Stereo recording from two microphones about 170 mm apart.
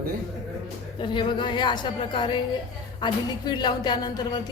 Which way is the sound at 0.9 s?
30° left (ahead or behind).